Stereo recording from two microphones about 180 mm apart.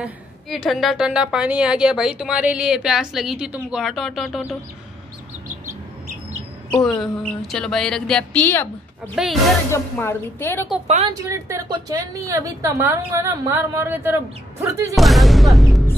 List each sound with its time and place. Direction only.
0.7 s a woman's voice: centre (ahead or behind)
6.8 s a woman's voice: centre (ahead or behind)
9.1 s a woman's voice: centre (ahead or behind)
9.7 s speech: 15° left (ahead or behind)
11.2 s a woman's voice: 15° right (ahead or behind)
15.0 s speech: centre (ahead or behind)